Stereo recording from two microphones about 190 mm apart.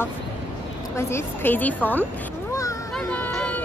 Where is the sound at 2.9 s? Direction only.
10° left (ahead or behind).